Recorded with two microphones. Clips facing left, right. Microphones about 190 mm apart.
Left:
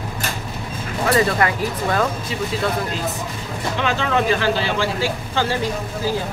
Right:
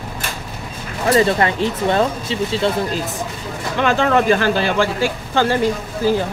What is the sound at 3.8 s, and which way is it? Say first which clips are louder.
Speech: right 5 dB; 50° right (ahead or behind).